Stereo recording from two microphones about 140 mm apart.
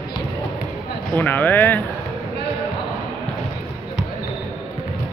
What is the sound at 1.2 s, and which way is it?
Speech, 15° left (ahead or behind).